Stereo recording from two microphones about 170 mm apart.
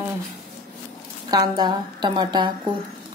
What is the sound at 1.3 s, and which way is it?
A woman's voice, 25° right (ahead or behind).